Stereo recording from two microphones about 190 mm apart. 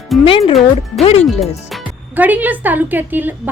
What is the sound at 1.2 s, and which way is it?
A woman's voice, centre (ahead or behind).